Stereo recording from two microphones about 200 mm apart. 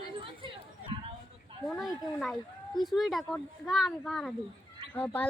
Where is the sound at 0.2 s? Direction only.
25° right (ahead or behind).